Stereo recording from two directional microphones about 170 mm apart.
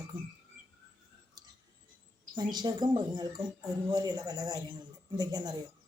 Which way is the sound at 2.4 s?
25° right (ahead or behind).